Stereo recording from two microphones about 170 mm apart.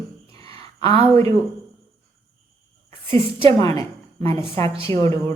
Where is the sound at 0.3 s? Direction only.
35° right (ahead or behind).